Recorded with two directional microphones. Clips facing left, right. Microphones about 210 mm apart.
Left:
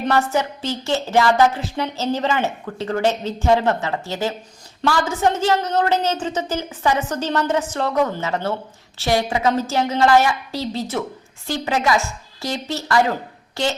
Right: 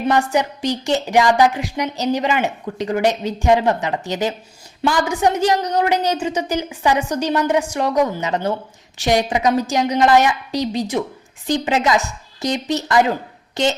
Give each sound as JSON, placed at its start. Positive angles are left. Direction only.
{"t": 0.1, "sound": "a woman's voice", "side_deg": -15}